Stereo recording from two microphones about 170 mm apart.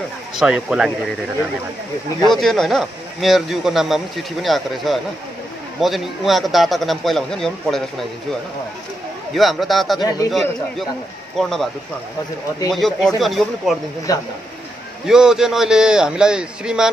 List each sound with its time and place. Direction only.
0.4 s speech: 5° right (ahead or behind)
2.3 s speech: centre (ahead or behind)
9.3 s speech: centre (ahead or behind)
9.9 s a man's voice: 25° left (ahead or behind)
11.3 s speech: centre (ahead or behind)
12.7 s speech: centre (ahead or behind)
14.1 s a man's voice: 20° left (ahead or behind)
15.0 s speech: 5° right (ahead or behind)